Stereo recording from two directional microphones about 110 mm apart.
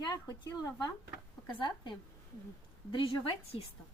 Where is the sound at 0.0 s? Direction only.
40° left (ahead or behind).